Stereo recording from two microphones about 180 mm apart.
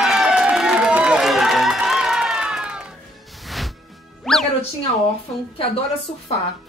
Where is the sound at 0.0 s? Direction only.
5° right (ahead or behind).